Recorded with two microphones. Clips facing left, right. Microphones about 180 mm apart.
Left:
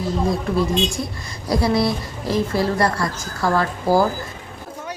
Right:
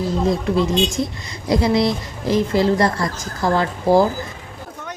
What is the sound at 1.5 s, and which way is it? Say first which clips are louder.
A woman's voice: right 2 dB; 20° right (ahead or behind).